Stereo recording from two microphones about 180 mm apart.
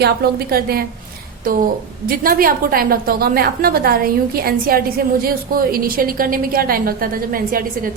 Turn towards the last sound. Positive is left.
turn(degrees=-50)  # may be behind; listen again after turning